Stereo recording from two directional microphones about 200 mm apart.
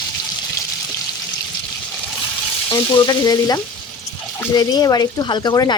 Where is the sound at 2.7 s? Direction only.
20° left (ahead or behind).